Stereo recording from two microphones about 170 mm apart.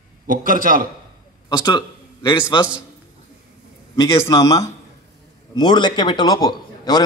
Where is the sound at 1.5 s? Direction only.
25° left (ahead or behind).